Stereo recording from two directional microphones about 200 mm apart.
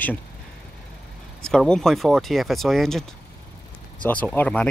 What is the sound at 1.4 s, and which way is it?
Speech, 5° left (ahead or behind).